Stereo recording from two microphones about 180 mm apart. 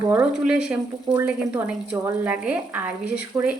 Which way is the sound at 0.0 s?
10° right (ahead or behind).